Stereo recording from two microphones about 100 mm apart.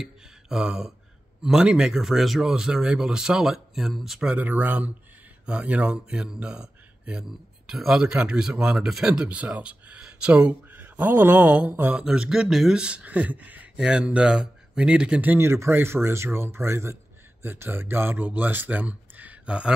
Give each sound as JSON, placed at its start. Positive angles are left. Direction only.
{"t": 0.0, "sound": "a sound", "side_deg": -5}
{"t": 1.4, "sound": "speech", "side_deg": -5}
{"t": 4.4, "sound": "speech", "side_deg": -15}
{"t": 12.0, "sound": "speech", "side_deg": -5}